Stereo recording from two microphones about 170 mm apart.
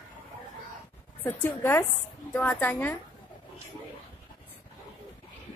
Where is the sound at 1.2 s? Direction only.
10° left (ahead or behind).